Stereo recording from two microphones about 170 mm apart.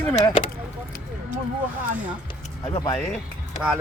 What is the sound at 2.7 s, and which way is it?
Speech, 25° left (ahead or behind).